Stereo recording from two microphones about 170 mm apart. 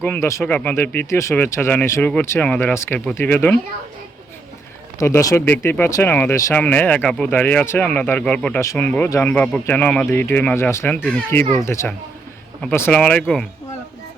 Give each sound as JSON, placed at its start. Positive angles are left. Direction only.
{"t": 0.0, "sound": "speech", "side_deg": 15}
{"t": 4.9, "sound": "speech", "side_deg": 20}